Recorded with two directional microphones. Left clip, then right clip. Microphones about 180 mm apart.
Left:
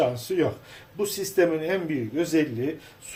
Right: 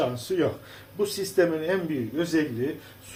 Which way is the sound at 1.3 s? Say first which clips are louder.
Left 1 dB; 20° left (ahead or behind).